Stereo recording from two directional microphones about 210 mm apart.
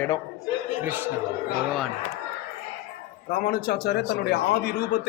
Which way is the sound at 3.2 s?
45° left (ahead or behind).